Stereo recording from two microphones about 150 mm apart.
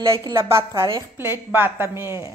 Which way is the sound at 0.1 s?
20° right (ahead or behind).